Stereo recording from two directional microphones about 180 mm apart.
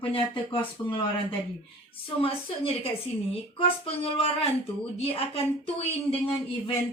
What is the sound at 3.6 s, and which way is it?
A woman's voice, 30° left (ahead or behind).